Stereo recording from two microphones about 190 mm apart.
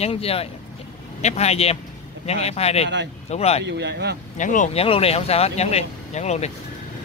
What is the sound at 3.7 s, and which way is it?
Speech, 65° right (ahead or behind).